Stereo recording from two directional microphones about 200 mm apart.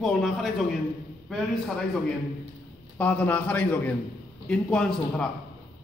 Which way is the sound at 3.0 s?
5° left (ahead or behind).